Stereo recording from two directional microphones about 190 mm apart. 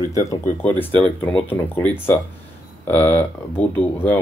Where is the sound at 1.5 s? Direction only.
10° left (ahead or behind).